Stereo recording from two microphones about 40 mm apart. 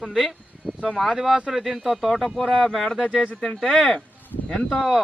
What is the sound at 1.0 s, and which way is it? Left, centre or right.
Speech, centre.